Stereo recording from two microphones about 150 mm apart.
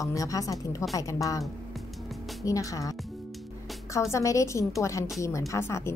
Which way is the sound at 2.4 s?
20° left (ahead or behind).